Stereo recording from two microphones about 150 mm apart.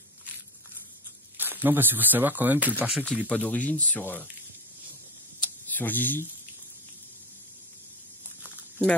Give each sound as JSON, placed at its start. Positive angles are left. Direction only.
{"t": 1.4, "sound": "speech", "side_deg": -15}
{"t": 3.3, "sound": "speech", "side_deg": 10}
{"t": 5.4, "sound": "a sound", "side_deg": 10}